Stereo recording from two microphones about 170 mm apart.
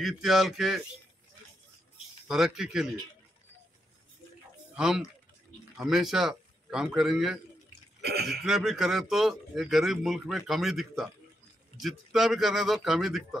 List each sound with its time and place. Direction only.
0.0 s a man's voice: centre (ahead or behind)
2.2 s a man's voice: 5° right (ahead or behind)
4.7 s a man's voice: 5° right (ahead or behind)
8.0 s speech: 70° right (ahead or behind)
8.4 s a man's voice: centre (ahead or behind)